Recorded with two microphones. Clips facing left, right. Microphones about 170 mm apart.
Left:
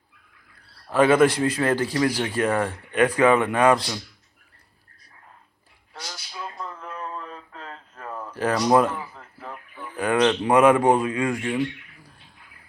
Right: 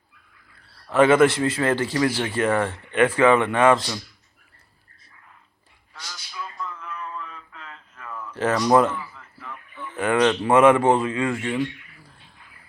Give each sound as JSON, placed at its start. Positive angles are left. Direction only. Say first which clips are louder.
{"t": 1.1, "sound": "speech", "louder": "right 1 dB", "side_deg": 15}
{"t": 5.9, "sound": "male singing", "louder": "left 3 dB", "side_deg": 30}
{"t": 8.7, "sound": "speech", "louder": "right 1 dB", "side_deg": 10}
{"t": 9.0, "sound": "a sound", "louder": "left 1 dB", "side_deg": 40}
{"t": 9.7, "sound": "speech", "louder": "right 1 dB", "side_deg": 10}